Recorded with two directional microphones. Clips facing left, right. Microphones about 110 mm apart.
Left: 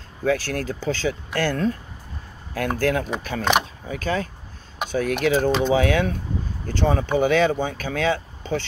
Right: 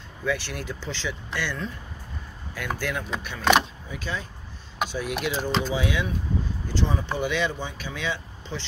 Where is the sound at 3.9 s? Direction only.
50° left (ahead or behind).